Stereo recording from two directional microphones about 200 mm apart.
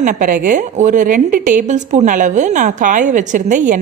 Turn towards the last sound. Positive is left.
turn(degrees=-40)  # may be behind; listen again after turning